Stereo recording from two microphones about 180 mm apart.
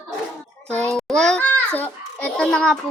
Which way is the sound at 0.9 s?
5° left (ahead or behind).